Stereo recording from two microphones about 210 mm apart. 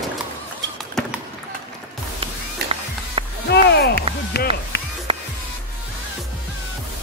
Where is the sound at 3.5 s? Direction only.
50° left (ahead or behind).